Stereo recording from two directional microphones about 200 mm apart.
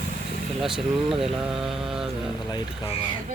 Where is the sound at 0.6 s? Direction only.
Centre (ahead or behind).